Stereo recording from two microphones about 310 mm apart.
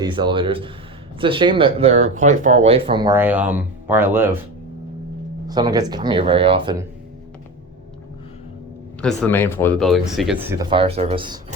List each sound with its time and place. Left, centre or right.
0.0 s speech: centre
5.5 s speech: centre
9.0 s speech: centre